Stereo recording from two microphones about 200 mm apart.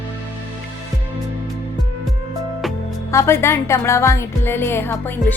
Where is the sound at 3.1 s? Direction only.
15° left (ahead or behind).